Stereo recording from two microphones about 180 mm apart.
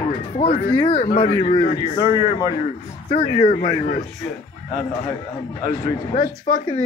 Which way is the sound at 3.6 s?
40° left (ahead or behind).